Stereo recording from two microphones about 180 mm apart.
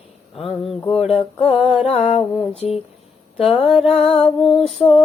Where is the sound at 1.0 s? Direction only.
35° left (ahead or behind).